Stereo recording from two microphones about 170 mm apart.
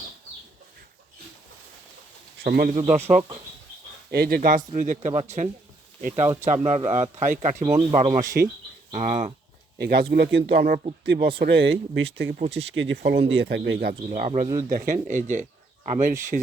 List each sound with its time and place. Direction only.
2.4 s speech: 65° right (ahead or behind)
2.7 s speech: 40° right (ahead or behind)
4.1 s speech: 65° right (ahead or behind); by 9.3 s 45° right (ahead or behind)
9.7 s speech: 70° right (ahead or behind)
12.1 s speech: 65° right (ahead or behind)
12.4 s speech: 35° right (ahead or behind)
12.7 s speech: 90° right
14.4 s speech: 20° right (ahead or behind)
14.8 s speech: 50° right (ahead or behind)